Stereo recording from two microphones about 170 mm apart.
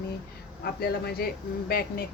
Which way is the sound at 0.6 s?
65° left (ahead or behind).